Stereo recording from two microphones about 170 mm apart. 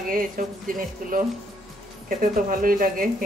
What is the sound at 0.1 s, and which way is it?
Speech, 55° right (ahead or behind).